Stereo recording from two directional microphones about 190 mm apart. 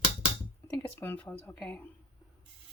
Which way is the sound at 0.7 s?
10° left (ahead or behind).